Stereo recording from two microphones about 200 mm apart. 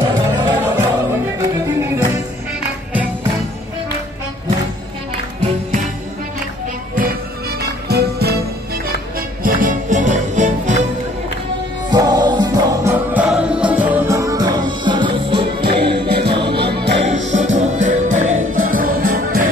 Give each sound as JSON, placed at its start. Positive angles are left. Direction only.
{"t": 0.1, "sound": "music", "side_deg": -20}
{"t": 7.9, "sound": "music", "side_deg": -55}
{"t": 9.4, "sound": "music", "side_deg": -45}
{"t": 11.9, "sound": "music", "side_deg": -20}
{"t": 12.9, "sound": "music", "side_deg": -5}
{"t": 15.6, "sound": "music", "side_deg": -55}
{"t": 16.3, "sound": "music", "side_deg": -25}
{"t": 16.6, "sound": "music", "side_deg": -55}
{"t": 17.0, "sound": "music", "side_deg": -35}